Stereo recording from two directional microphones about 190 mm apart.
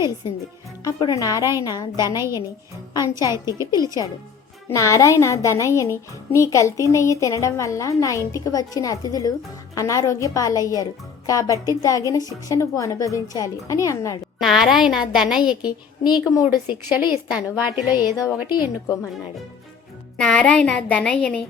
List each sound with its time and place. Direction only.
0.9 s speech: 20° left (ahead or behind)
3.3 s a woman's voice: 15° right (ahead or behind)
3.8 s a woman's voice: 20° left (ahead or behind)
14.3 s a woman's voice: centre (ahead or behind)
15.6 s speech: 20° left (ahead or behind)
16.4 s a woman's voice: 10° right (ahead or behind)
20.1 s a woman's voice: 5° left (ahead or behind)